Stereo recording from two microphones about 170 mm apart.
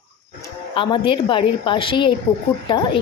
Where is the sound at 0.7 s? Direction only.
30° left (ahead or behind).